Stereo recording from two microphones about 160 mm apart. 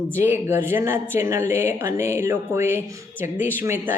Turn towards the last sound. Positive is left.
turn(degrees=-15)  # may be behind; listen again after turning